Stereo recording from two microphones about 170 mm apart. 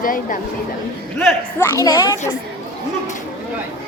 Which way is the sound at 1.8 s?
25° left (ahead or behind).